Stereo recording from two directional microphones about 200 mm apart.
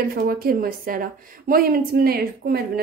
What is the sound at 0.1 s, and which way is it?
A woman's voice, 50° right (ahead or behind).